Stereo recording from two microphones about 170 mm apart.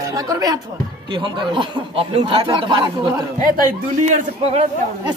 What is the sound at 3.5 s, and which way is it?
Speech, 50° right (ahead or behind).